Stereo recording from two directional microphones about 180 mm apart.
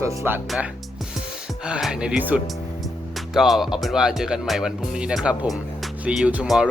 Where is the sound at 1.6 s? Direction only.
5° right (ahead or behind).